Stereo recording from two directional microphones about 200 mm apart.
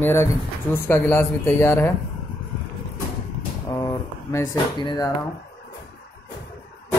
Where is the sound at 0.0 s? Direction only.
10° left (ahead or behind).